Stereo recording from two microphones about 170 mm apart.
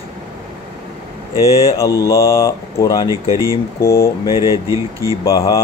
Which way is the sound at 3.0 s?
20° right (ahead or behind).